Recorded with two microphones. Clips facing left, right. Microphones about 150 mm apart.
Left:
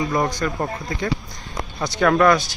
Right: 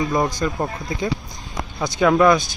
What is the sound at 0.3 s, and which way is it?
Speech, 15° right (ahead or behind).